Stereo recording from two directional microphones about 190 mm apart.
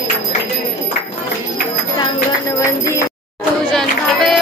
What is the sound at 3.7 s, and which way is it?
Music, centre (ahead or behind).